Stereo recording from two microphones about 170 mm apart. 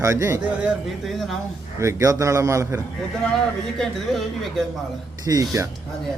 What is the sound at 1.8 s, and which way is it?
A man's voice, 20° right (ahead or behind).